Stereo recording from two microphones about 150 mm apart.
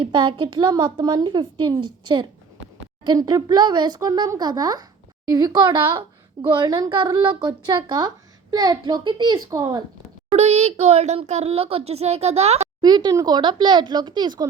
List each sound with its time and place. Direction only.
0.0 s a woman's voice: 35° right (ahead or behind)
10.3 s a child's voice: 45° right (ahead or behind)
12.8 s speech: 30° right (ahead or behind)